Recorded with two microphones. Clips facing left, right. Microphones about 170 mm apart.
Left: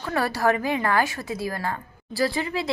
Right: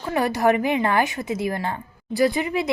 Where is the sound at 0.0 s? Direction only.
20° right (ahead or behind).